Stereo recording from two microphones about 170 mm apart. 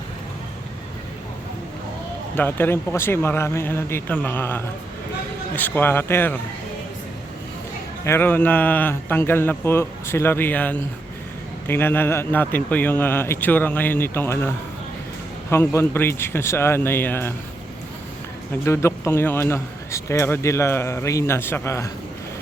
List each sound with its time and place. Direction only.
2.3 s a man's voice: 10° left (ahead or behind)
8.0 s a man's voice: 15° left (ahead or behind)
18.6 s a man's voice: 15° left (ahead or behind)